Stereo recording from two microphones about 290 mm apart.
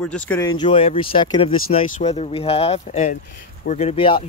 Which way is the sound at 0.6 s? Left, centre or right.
Centre.